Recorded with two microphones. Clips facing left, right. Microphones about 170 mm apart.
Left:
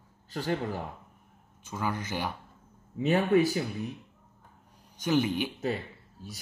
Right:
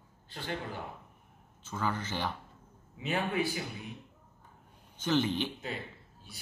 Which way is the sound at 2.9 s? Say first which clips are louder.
Left 8 dB; 40° left (ahead or behind).